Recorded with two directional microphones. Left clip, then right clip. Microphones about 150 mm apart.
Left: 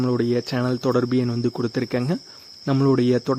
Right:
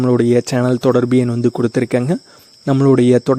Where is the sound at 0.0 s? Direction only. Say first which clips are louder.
Right 8 dB; 50° right (ahead or behind).